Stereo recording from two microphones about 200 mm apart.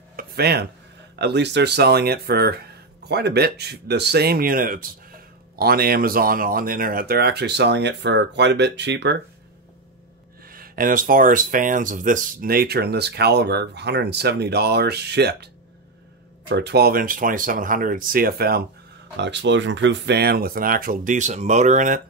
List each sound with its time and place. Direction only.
0.1 s a sound: 50° right (ahead or behind)
1.1 s speech: 60° right (ahead or behind)
10.4 s speech: 45° right (ahead or behind)
19.1 s speech: 60° right (ahead or behind); by 22.0 s 40° right (ahead or behind)